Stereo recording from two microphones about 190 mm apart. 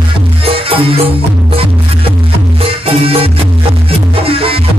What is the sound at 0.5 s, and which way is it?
Music, 30° right (ahead or behind).